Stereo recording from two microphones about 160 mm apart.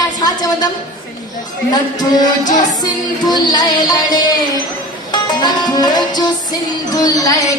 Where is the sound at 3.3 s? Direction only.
25° left (ahead or behind).